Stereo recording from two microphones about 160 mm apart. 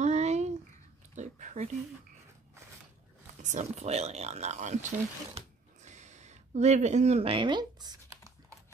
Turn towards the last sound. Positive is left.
turn(degrees=-25)  # may be behind; listen again after turning